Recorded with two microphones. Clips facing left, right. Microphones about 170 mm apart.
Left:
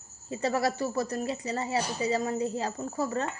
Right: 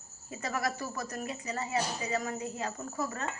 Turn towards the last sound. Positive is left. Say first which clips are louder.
# left 6 dB
turn(degrees=30)  # may be behind; listen again after turning